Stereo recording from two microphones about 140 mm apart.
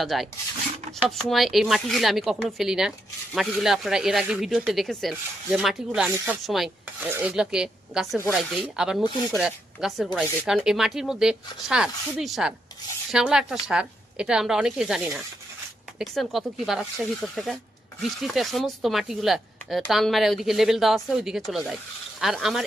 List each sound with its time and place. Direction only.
0.0 s speech: centre (ahead or behind)
7.0 s speech: 10° right (ahead or behind)